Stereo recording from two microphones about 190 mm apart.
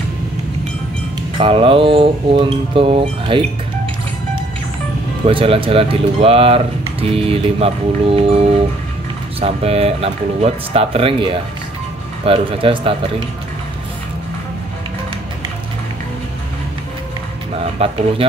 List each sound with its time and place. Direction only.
1.4 s speech: 30° right (ahead or behind)
5.2 s speech: 30° right (ahead or behind)
17.7 s speech: 30° right (ahead or behind)